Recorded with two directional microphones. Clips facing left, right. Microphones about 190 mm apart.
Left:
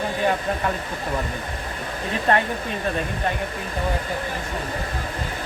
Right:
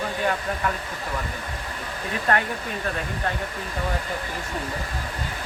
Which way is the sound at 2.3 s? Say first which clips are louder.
Left 3 dB; 25° left (ahead or behind).